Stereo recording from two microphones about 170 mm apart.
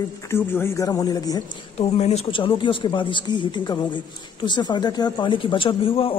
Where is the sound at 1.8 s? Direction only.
40° left (ahead or behind).